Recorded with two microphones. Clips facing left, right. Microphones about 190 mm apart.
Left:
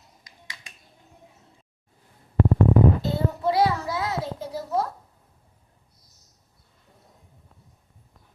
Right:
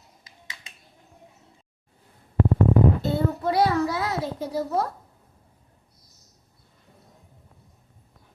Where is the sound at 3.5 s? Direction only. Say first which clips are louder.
Right 1 dB; 60° right (ahead or behind).